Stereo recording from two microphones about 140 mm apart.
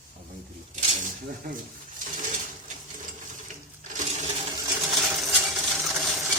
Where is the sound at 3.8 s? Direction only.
65° right (ahead or behind).